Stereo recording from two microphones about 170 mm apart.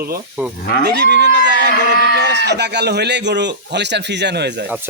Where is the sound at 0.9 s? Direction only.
75° right (ahead or behind).